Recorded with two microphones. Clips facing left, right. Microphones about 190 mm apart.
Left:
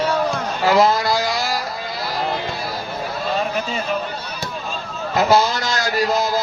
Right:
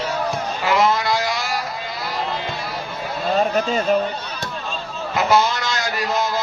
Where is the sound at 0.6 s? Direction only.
35° left (ahead or behind).